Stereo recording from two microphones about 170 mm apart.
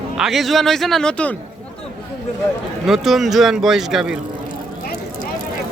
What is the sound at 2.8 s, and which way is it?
A man's voice, centre (ahead or behind).